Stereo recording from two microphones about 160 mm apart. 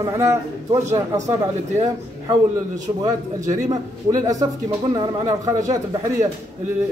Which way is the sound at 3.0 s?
20° right (ahead or behind).